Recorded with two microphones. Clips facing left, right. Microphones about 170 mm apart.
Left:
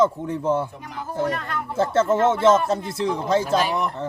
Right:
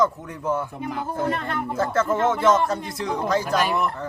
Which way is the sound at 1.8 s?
25° left (ahead or behind).